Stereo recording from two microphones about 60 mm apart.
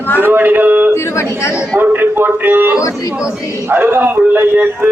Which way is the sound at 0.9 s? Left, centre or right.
Left.